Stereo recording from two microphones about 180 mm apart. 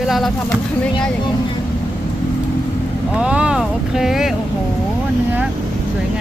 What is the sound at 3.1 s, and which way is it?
Speech, 5° right (ahead or behind).